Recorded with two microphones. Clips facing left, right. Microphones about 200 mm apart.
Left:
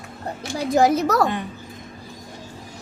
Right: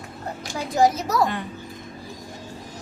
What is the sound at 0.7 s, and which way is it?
Speech, 60° left (ahead or behind).